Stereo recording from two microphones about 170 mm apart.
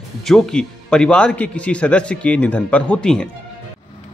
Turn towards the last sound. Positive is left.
turn(degrees=5)  # may be behind; listen again after turning